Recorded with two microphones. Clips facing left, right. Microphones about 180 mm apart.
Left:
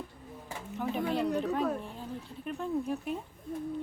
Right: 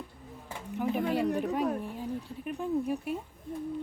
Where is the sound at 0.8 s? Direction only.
10° right (ahead or behind).